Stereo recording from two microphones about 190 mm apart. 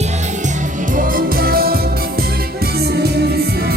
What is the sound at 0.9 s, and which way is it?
Music, 45° right (ahead or behind).